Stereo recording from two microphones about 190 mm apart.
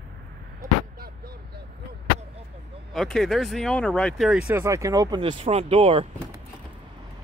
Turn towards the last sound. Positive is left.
turn(degrees=-30)  # may be behind; listen again after turning